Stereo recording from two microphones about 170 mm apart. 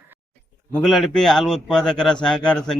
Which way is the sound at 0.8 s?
Centre (ahead or behind).